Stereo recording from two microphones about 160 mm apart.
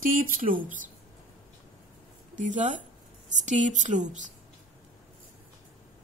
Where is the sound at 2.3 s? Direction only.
50° right (ahead or behind).